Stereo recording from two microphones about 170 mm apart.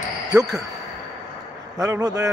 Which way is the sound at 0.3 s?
20° right (ahead or behind).